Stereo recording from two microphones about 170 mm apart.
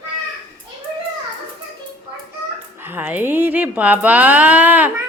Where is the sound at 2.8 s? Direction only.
10° right (ahead or behind).